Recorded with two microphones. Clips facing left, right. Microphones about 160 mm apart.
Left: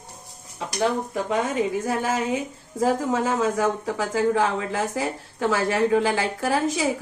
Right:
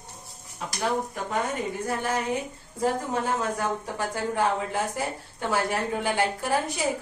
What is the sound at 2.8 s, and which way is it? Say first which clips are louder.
A woman's voice: left 4 dB; 90° left.